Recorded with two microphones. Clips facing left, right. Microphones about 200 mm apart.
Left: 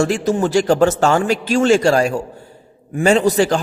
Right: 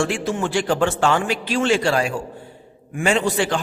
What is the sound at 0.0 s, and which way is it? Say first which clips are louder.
A man's voice: left 5 dB; 40° left (ahead or behind).